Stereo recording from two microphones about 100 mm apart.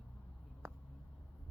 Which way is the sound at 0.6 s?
25° right (ahead or behind).